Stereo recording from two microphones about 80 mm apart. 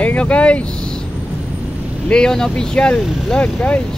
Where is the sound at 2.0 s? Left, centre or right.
Centre.